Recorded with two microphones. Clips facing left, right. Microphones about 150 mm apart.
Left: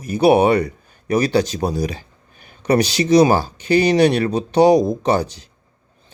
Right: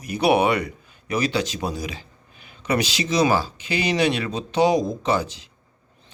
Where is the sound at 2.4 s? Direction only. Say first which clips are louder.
Left 7 dB; 45° left (ahead or behind).